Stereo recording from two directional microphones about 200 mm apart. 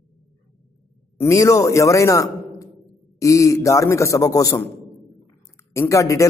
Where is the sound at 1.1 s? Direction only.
15° left (ahead or behind).